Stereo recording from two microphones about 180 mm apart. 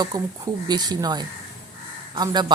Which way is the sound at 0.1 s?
20° right (ahead or behind).